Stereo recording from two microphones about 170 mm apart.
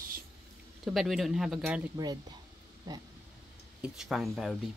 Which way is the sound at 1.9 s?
25° right (ahead or behind).